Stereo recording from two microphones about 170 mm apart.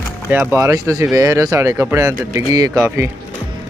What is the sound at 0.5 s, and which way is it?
Speech, 15° right (ahead or behind).